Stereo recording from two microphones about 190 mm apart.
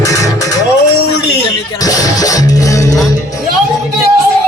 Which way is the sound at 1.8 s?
20° left (ahead or behind).